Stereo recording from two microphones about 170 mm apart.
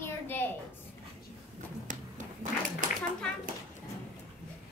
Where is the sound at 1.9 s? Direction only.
50° right (ahead or behind).